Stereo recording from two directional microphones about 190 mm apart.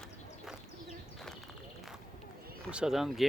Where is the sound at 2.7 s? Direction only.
5° right (ahead or behind).